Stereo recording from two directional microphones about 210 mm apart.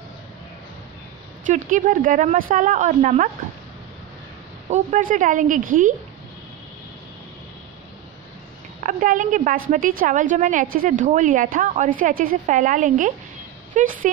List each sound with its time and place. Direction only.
1.4 s a woman's voice: 40° right (ahead or behind)
4.6 s a woman's voice: 35° right (ahead or behind)
8.8 s a woman's voice: 40° right (ahead or behind)